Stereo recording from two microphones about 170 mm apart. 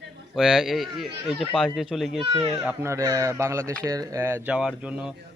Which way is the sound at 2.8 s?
20° right (ahead or behind).